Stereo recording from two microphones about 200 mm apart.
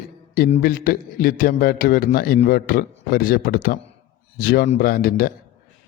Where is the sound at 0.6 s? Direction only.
45° left (ahead or behind).